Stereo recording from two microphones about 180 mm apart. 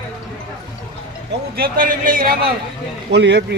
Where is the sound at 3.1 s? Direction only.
75° right (ahead or behind).